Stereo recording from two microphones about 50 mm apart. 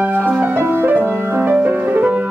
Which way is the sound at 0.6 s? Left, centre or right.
Right.